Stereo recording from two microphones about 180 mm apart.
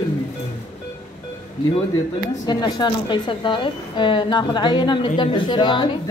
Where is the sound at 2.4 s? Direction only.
25° left (ahead or behind).